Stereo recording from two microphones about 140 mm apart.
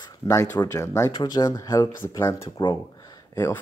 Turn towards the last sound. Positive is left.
turn(degrees=30)  # may be behind; listen again after turning